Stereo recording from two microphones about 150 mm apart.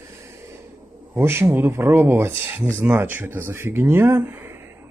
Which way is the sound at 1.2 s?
15° right (ahead or behind).